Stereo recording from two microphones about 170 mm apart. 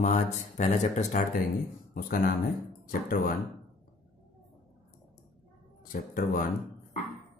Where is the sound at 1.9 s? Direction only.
60° left (ahead or behind).